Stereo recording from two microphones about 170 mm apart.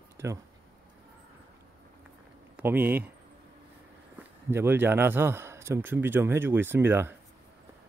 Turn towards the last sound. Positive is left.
turn(degrees=-15)  # may be behind; listen again after turning